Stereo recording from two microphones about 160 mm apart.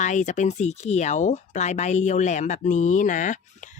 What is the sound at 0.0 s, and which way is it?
Speech, 50° left (ahead or behind).